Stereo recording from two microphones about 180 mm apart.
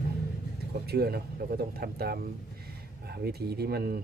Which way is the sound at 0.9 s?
60° right (ahead or behind).